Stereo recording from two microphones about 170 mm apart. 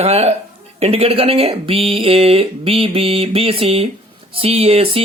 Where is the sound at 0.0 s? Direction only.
40° right (ahead or behind).